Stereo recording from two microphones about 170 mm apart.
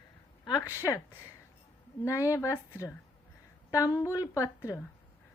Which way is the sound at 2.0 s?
20° left (ahead or behind).